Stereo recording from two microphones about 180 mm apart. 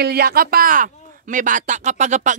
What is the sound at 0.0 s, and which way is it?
Speech, 60° right (ahead or behind).